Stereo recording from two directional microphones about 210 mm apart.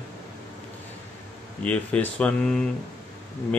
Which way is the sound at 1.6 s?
5° left (ahead or behind).